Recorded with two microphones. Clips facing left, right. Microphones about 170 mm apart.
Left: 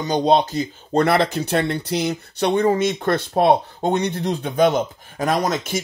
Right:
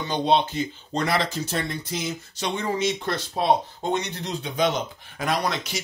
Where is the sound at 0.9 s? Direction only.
55° left (ahead or behind).